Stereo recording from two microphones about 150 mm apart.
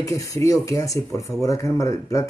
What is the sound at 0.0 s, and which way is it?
Speech, 20° left (ahead or behind).